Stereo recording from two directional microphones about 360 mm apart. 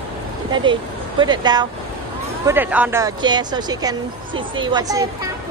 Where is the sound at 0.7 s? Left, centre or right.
Centre.